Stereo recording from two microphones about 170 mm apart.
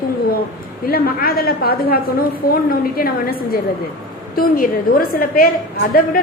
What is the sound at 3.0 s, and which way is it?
A woman's voice, 60° left (ahead or behind).